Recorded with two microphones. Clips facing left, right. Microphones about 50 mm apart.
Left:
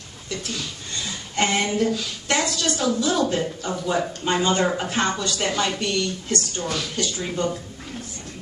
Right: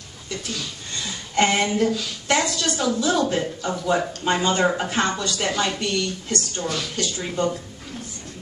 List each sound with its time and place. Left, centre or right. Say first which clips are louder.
0.3 s speech: even; centre